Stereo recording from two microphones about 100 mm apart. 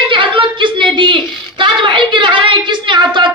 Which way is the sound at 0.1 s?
55° right (ahead or behind).